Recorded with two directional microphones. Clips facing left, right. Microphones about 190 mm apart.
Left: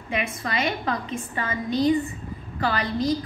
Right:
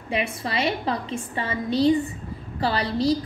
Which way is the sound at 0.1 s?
30° right (ahead or behind).